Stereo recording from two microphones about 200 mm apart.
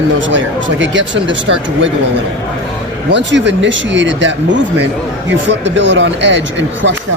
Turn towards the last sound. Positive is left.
turn(degrees=-65)  # may be behind; listen again after turning